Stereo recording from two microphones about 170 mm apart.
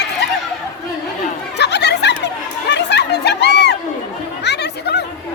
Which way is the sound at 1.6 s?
85° left.